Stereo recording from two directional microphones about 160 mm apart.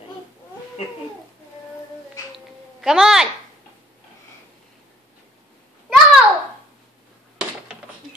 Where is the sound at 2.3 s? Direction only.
5° right (ahead or behind).